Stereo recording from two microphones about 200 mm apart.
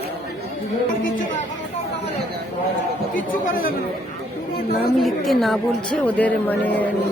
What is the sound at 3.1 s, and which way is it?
Speech, 45° left (ahead or behind).